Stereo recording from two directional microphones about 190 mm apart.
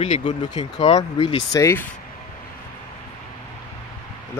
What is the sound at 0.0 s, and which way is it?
Speech, 40° left (ahead or behind).